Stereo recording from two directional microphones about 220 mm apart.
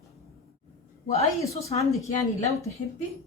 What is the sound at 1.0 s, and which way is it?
Speech, 30° left (ahead or behind).